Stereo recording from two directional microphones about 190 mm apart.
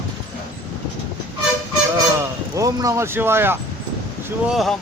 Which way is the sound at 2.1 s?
15° right (ahead or behind).